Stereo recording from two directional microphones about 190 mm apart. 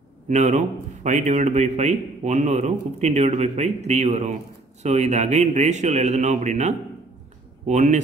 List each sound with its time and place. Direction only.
0.3 s a man's voice: 40° right (ahead or behind)